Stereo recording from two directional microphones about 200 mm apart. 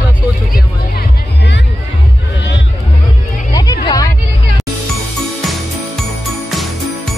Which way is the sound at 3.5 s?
20° left (ahead or behind).